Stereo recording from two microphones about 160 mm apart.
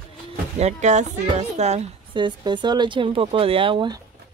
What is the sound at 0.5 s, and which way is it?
Speech, 45° right (ahead or behind).